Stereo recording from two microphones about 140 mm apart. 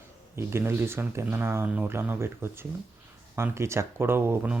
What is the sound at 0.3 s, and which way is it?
Speech, 15° right (ahead or behind).